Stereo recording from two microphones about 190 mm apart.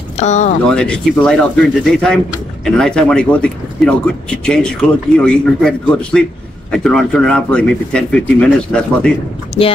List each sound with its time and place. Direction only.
0.2 s speech: 40° left (ahead or behind)
0.7 s a man's voice: 5° left (ahead or behind)